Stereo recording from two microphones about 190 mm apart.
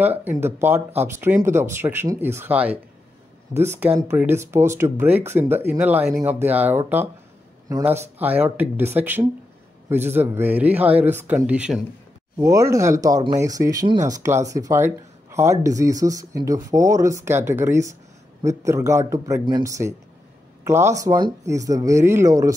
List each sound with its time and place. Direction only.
0.0 s speech: 10° right (ahead or behind)